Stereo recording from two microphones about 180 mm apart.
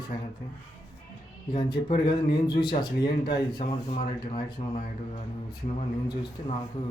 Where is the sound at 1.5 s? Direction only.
25° left (ahead or behind).